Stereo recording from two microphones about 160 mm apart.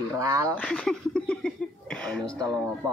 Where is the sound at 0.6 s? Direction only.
5° left (ahead or behind).